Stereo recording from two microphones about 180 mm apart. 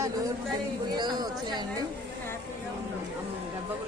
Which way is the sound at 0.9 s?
25° right (ahead or behind).